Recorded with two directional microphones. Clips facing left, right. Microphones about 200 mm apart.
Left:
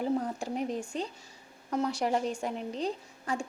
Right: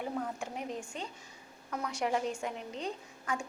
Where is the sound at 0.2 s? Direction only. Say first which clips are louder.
Left 3 dB; 35° left (ahead or behind).